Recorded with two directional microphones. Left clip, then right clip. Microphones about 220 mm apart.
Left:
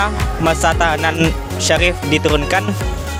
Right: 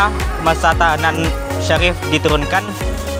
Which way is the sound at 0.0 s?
50° left (ahead or behind).